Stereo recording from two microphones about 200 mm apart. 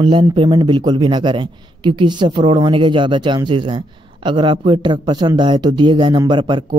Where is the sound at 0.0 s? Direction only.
25° right (ahead or behind).